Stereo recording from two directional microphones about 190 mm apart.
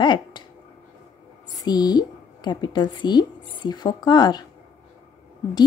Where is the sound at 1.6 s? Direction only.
20° left (ahead or behind).